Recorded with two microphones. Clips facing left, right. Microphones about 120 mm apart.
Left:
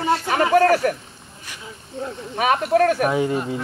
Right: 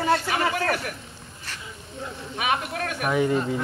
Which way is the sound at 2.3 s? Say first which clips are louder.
Left 9 dB; 40° left (ahead or behind).